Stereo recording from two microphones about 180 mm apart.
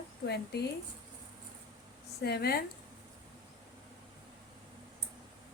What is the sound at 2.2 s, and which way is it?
Speech, 60° left (ahead or behind).